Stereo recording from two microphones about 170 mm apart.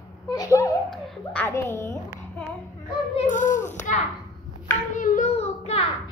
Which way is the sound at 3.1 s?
50° left (ahead or behind).